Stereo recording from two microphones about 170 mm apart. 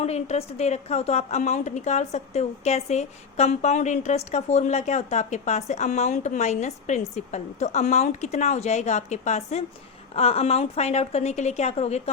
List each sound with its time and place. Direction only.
0.0 s a woman's voice: 40° left (ahead or behind)